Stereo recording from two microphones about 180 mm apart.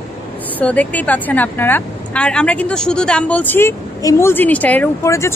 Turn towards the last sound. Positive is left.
turn(degrees=15)  # may be behind; listen again after turning